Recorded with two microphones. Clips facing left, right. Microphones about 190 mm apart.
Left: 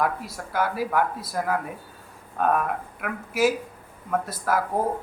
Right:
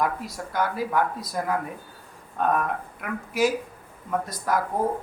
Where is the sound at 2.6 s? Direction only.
5° left (ahead or behind).